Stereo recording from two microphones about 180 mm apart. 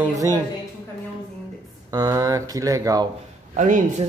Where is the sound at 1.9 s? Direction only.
20° right (ahead or behind).